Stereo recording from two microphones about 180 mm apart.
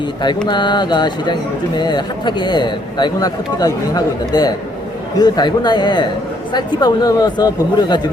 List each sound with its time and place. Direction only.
0.4 s speech: 25° left (ahead or behind)